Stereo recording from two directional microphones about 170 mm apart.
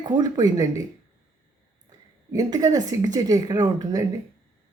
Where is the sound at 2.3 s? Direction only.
20° right (ahead or behind).